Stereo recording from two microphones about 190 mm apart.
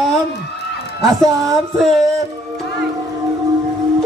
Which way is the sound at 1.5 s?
Centre (ahead or behind).